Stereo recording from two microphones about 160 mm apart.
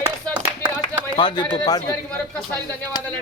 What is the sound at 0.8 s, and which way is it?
Speech, 25° left (ahead or behind).